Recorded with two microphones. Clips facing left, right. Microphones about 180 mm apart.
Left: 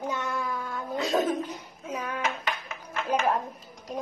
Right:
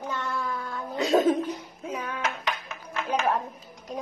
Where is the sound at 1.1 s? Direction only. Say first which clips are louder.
Right 5 dB; 30° right (ahead or behind).